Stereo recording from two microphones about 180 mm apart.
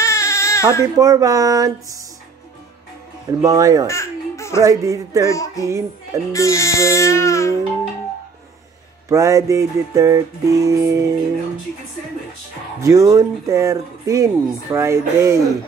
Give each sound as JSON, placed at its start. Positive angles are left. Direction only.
{"t": 0.0, "sound": "baby cry", "side_deg": 15}
{"t": 0.9, "sound": "speech", "side_deg": -20}
{"t": 3.4, "sound": "speech", "side_deg": -20}
{"t": 3.8, "sound": "babbling", "side_deg": 15}
{"t": 4.6, "sound": "speech", "side_deg": -20}
{"t": 5.3, "sound": "music", "side_deg": 20}
{"t": 5.7, "sound": "music", "side_deg": -20}
{"t": 6.3, "sound": "speech", "side_deg": 15}
{"t": 9.1, "sound": "speech", "side_deg": -15}
{"t": 12.8, "sound": "speech", "side_deg": -20}